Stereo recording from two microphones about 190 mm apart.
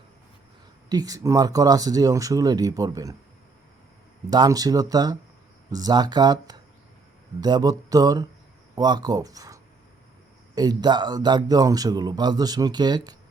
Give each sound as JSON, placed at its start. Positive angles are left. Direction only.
{"t": 0.9, "sound": "a man's voice", "side_deg": -20}
{"t": 4.3, "sound": "a man's voice", "side_deg": -20}